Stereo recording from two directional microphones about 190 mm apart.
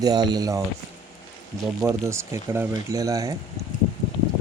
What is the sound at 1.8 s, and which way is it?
Speech, 15° right (ahead or behind).